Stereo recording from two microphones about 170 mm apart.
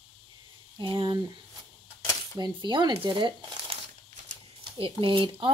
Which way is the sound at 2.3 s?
25° right (ahead or behind).